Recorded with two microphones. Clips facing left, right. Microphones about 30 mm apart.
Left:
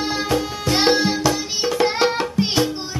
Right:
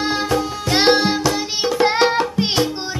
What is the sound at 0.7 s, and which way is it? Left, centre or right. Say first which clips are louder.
Music: right 2 dB; centre.